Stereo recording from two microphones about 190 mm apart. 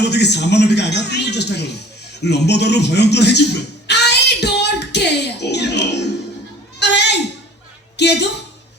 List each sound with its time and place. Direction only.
0.0 s speech: 60° left (ahead or behind)
2.2 s a sound: 60° left (ahead or behind)
7.9 s a woman's voice: 65° left (ahead or behind)